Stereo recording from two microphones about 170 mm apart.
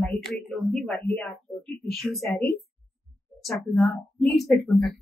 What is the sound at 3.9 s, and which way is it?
Speech, centre (ahead or behind).